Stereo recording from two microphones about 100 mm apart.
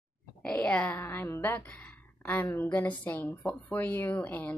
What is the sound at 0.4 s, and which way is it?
A woman's voice, 10° left (ahead or behind).